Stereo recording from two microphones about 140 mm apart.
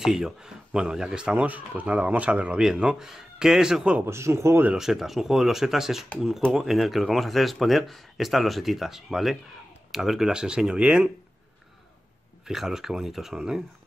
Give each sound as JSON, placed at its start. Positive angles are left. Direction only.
{"t": 0.0, "sound": "speech", "side_deg": -5}
{"t": 4.0, "sound": "speech", "side_deg": -20}
{"t": 4.7, "sound": "speech", "side_deg": 0}
{"t": 12.4, "sound": "speech", "side_deg": -5}